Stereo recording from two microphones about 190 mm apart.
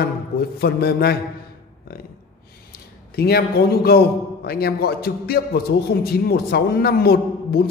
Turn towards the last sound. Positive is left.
turn(degrees=55)  # may be behind; listen again after turning